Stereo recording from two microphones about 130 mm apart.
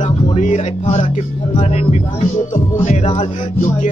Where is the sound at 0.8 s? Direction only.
50° left (ahead or behind).